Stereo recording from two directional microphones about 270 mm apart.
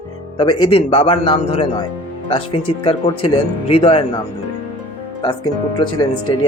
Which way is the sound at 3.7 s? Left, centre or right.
Left.